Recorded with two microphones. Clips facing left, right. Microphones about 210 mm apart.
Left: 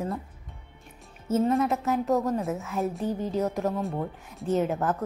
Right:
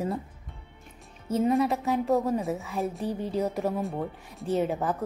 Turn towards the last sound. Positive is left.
turn(degrees=0)  # may be behind; listen again after turning